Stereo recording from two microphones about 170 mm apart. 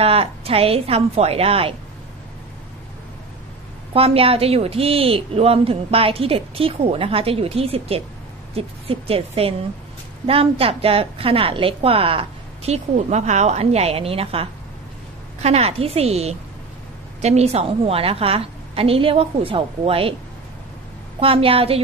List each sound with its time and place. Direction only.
0.0 s a woman's voice: 35° right (ahead or behind)
3.9 s a woman's voice: 35° right (ahead or behind)
21.2 s a woman's voice: 35° right (ahead or behind)